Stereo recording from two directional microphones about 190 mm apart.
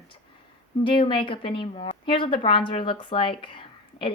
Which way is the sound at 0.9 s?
25° left (ahead or behind).